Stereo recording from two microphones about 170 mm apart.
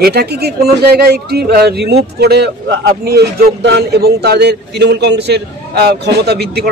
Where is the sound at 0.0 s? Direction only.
70° right (ahead or behind).